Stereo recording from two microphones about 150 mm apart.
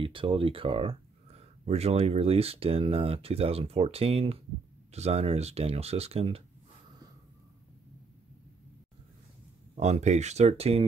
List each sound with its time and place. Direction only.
0.0 s speech: 35° right (ahead or behind)
9.8 s speech: 50° right (ahead or behind)